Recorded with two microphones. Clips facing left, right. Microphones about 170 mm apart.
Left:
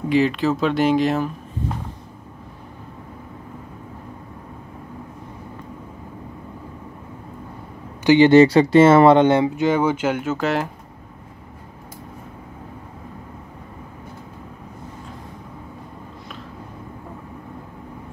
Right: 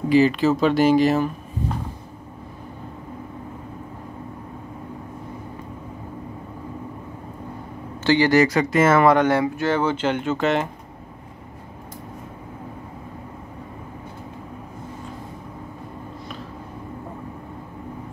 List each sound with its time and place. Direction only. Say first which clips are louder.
0.1 s speech: right 2 dB; centre (ahead or behind)
8.0 s speech: left 6 dB; 20° left (ahead or behind); by 10.7 s centre (ahead or behind)